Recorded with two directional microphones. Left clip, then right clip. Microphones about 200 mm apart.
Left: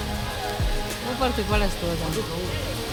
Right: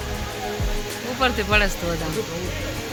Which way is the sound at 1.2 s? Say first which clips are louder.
Right 6 dB; centre (ahead or behind).